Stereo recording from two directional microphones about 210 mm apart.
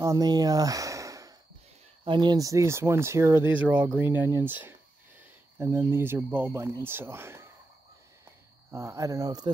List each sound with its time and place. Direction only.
0.0 s speech: 15° right (ahead or behind)
8.7 s speech: 15° right (ahead or behind)